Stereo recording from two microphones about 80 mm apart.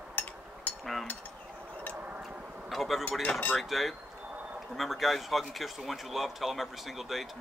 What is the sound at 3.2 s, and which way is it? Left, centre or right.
Speech, centre.